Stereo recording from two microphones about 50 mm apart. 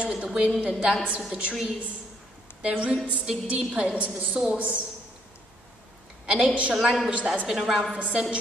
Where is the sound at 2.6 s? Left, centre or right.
Right.